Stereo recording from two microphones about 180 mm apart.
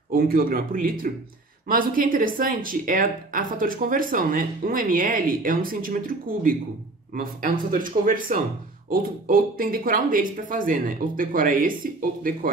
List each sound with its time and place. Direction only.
0.1 s speech: 55° right (ahead or behind)